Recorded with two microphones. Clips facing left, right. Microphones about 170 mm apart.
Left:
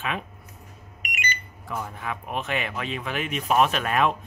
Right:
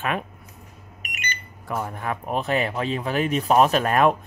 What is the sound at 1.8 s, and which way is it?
Speech, 50° right (ahead or behind).